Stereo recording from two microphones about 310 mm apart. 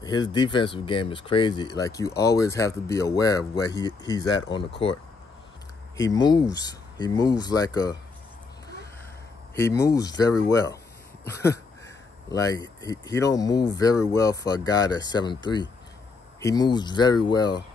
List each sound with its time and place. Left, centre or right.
0.0 s speech: centre
5.9 s speech: centre
9.6 s speech: centre